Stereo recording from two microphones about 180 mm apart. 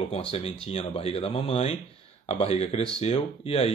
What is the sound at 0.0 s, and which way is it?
Speech, 35° left (ahead or behind).